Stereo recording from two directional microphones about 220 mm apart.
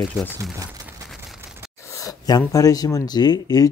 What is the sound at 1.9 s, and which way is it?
Speech, 15° left (ahead or behind).